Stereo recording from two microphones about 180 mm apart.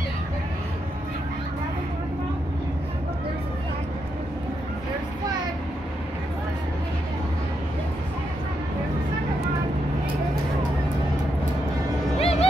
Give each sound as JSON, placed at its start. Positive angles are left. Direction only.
{"t": 12.2, "sound": "music", "side_deg": 35}